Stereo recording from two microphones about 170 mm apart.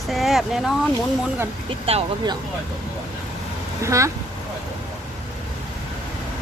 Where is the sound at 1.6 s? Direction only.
35° right (ahead or behind).